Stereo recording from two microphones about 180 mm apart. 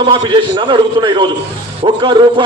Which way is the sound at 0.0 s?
25° right (ahead or behind).